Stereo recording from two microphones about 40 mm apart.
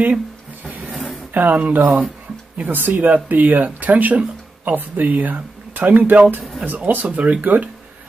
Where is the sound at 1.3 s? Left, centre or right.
Right.